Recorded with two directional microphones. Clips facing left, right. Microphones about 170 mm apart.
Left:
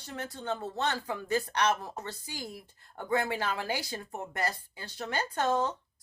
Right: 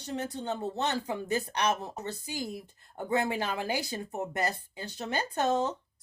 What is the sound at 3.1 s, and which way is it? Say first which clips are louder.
Speech: right 1 dB; 20° right (ahead or behind).